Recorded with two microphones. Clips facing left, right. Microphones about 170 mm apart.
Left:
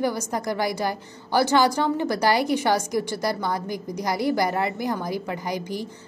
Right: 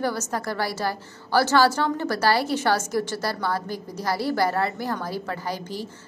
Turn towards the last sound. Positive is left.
turn(degrees=15)  # may be behind; listen again after turning